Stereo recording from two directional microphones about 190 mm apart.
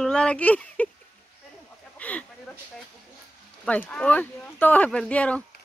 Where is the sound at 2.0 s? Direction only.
5° left (ahead or behind).